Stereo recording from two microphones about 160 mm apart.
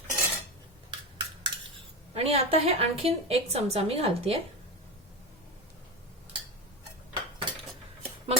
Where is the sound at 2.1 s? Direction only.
40° right (ahead or behind).